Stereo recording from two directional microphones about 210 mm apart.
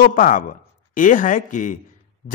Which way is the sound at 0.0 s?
40° left (ahead or behind).